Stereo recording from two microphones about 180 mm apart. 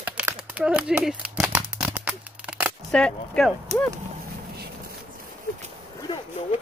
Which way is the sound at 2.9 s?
5° left (ahead or behind).